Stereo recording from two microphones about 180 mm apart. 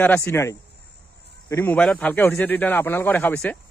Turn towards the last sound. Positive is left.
turn(degrees=10)  # may be behind; listen again after turning